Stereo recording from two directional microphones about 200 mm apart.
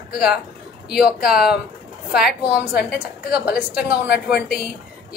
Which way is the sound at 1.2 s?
50° left (ahead or behind).